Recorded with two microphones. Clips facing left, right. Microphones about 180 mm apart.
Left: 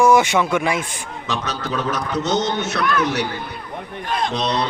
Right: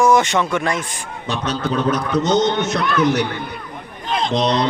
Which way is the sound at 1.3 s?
15° right (ahead or behind).